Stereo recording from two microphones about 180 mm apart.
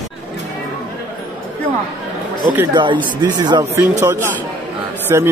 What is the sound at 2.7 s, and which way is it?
A man's voice, 25° right (ahead or behind).